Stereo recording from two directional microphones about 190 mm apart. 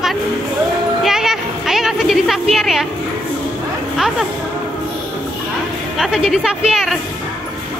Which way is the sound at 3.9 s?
Centre (ahead or behind).